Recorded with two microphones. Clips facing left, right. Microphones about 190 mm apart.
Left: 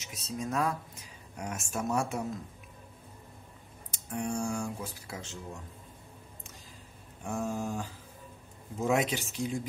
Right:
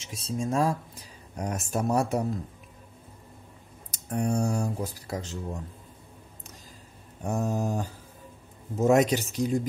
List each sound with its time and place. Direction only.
0.0 s speech: 30° right (ahead or behind)
3.9 s speech: 40° right (ahead or behind)
7.2 s speech: 40° right (ahead or behind)